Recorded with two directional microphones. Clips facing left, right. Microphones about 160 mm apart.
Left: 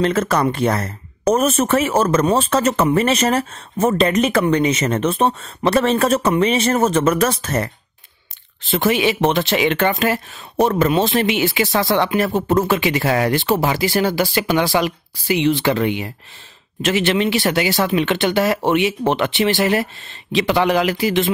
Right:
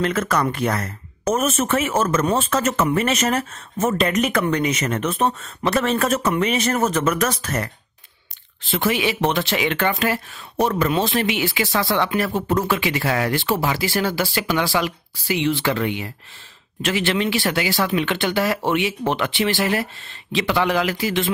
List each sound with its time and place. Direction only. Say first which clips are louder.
0.0 s speech: left 4 dB; 30° left (ahead or behind)
8.7 s speech: left 4 dB; 25° left (ahead or behind)
13.3 s speech: left 4 dB; 20° left (ahead or behind)